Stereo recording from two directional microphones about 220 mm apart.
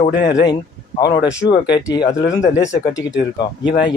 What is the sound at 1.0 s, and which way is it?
Speech, 20° left (ahead or behind).